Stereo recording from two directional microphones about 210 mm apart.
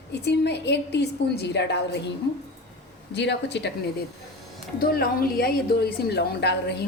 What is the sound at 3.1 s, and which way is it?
Speech, 55° left (ahead or behind).